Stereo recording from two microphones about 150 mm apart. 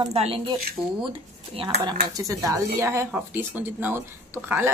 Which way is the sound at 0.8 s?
5° right (ahead or behind).